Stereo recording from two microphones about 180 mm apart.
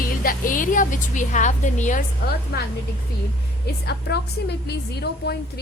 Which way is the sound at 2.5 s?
60° left (ahead or behind).